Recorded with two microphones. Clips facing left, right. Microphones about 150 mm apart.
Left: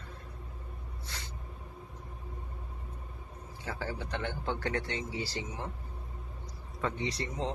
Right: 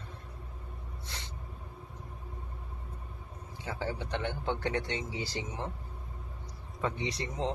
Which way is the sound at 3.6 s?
20° right (ahead or behind).